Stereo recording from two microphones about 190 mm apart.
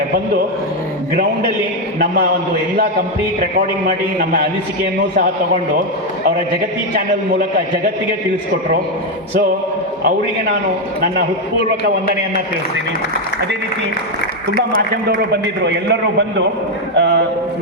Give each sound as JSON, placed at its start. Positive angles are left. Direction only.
{"t": 3.8, "sound": "a man's voice", "side_deg": -50}
{"t": 15.3, "sound": "a man's voice", "side_deg": -65}